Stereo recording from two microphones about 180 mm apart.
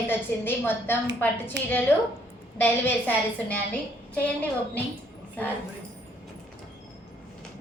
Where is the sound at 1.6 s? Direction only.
75° right (ahead or behind).